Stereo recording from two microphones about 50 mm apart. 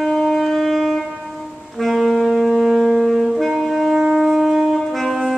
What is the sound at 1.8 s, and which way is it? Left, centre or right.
Saxophone, centre.